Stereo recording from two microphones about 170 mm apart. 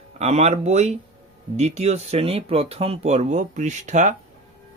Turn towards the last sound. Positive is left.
turn(degrees=-45)  # may be behind; listen again after turning